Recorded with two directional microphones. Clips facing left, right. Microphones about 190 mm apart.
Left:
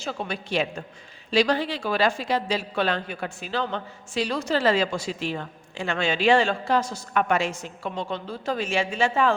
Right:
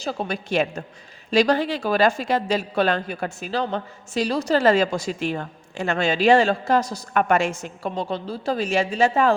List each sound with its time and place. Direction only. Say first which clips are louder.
0.0 s a woman's voice: right 4 dB; 40° right (ahead or behind)